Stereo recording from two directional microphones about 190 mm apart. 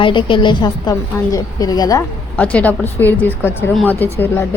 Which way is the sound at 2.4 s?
10° left (ahead or behind).